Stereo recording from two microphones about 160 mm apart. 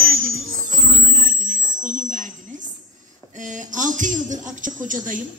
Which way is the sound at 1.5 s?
55° right (ahead or behind).